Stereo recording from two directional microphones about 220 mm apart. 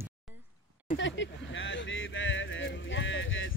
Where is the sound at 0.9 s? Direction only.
55° left (ahead or behind).